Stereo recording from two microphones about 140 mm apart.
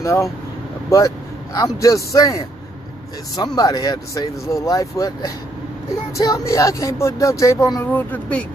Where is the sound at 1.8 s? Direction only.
25° left (ahead or behind).